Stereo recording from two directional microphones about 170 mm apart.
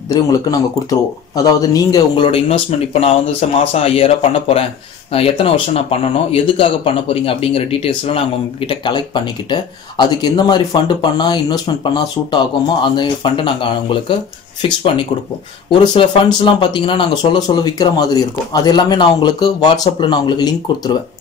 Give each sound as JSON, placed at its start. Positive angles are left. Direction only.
{"t": 0.1, "sound": "speech", "side_deg": 20}
{"t": 2.3, "sound": "speech", "side_deg": 35}
{"t": 15.7, "sound": "speech", "side_deg": 30}